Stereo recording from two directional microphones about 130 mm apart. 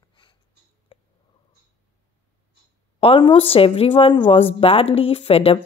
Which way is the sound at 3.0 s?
40° left (ahead or behind).